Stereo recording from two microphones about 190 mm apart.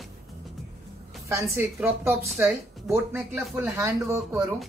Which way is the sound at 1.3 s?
15° right (ahead or behind).